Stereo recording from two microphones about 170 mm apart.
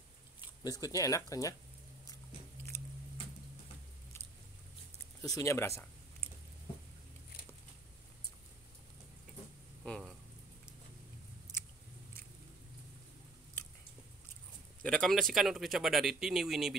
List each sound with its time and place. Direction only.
0.7 s speech: 20° left (ahead or behind)
2.7 s a sound: 15° left (ahead or behind)
5.2 s speech: 20° left (ahead or behind)
9.8 s speech: centre (ahead or behind)
14.8 s speech: 5° left (ahead or behind)